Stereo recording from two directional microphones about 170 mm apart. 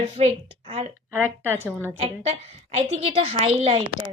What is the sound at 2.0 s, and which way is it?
A woman's voice, 35° right (ahead or behind).